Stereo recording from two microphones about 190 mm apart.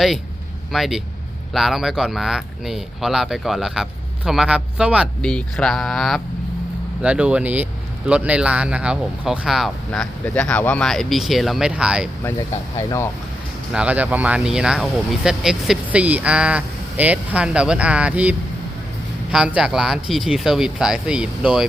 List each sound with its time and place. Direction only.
0.7 s speech: centre (ahead or behind)
13.7 s speech: 10° right (ahead or behind)